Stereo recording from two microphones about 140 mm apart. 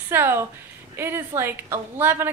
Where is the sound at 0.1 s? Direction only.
15° right (ahead or behind).